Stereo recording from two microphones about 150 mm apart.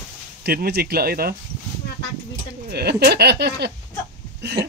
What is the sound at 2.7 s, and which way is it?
Speech, 90° right.